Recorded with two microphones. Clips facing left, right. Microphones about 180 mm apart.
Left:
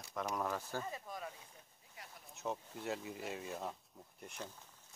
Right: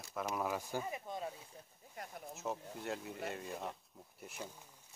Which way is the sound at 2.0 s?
50° right (ahead or behind).